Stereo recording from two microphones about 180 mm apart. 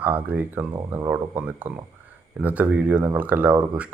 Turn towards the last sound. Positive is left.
turn(degrees=-10)  # may be behind; listen again after turning